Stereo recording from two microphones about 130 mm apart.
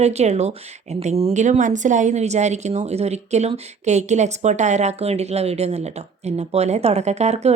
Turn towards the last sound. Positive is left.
turn(degrees=-55)  # may be behind; listen again after turning